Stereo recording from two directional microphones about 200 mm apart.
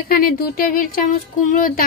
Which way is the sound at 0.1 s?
45° left (ahead or behind).